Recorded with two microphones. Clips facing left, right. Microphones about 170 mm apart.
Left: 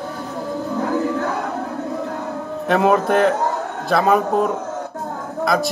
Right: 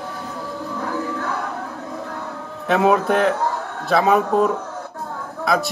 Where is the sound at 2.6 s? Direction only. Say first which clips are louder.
Even; centre (ahead or behind).